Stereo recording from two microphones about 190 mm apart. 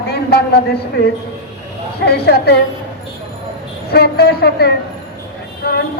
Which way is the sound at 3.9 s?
55° left (ahead or behind).